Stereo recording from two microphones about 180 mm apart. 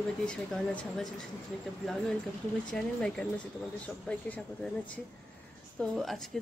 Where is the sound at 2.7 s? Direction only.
5° left (ahead or behind).